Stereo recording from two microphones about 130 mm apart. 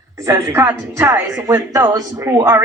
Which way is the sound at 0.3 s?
25° right (ahead or behind).